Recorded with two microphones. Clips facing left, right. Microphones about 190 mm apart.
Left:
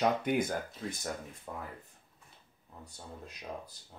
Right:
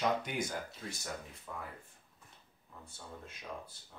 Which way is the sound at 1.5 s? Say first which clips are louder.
Left 3 dB; 35° left (ahead or behind).